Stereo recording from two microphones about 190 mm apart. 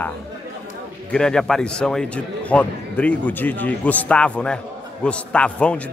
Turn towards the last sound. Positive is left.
turn(degrees=5)  # may be behind; listen again after turning